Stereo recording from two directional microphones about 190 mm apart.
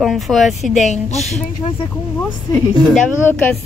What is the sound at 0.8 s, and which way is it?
Speech, 35° left (ahead or behind).